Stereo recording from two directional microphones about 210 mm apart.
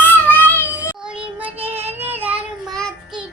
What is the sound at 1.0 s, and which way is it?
Child singing, 5° right (ahead or behind).